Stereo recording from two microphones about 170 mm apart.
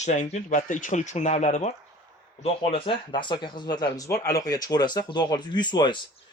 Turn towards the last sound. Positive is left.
turn(degrees=25)  # may be behind; listen again after turning